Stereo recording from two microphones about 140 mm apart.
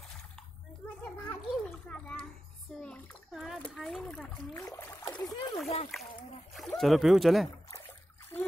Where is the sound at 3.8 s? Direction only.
5° left (ahead or behind).